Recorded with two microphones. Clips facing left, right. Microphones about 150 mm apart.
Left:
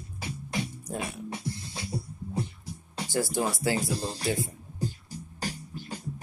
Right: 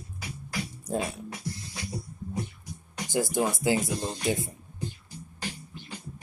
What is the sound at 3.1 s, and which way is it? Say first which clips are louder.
Speech: right 2 dB; 20° right (ahead or behind).